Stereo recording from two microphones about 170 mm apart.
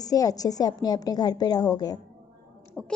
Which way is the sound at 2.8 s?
5° left (ahead or behind).